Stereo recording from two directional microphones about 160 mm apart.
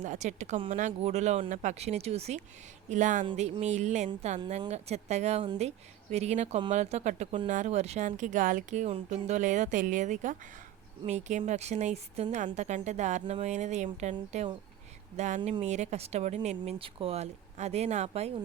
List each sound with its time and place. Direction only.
0.0 s speech: 45° right (ahead or behind)